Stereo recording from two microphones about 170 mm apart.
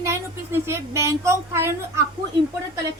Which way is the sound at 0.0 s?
15° right (ahead or behind).